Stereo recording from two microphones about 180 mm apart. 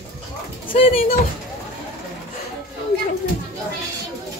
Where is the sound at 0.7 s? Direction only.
30° left (ahead or behind).